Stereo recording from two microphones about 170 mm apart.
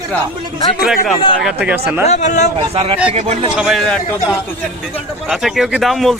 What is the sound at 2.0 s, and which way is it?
Speech, 45° left (ahead or behind).